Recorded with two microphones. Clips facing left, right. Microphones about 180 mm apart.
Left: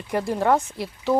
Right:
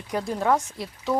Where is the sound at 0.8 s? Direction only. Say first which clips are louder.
Left 4 dB; 20° left (ahead or behind).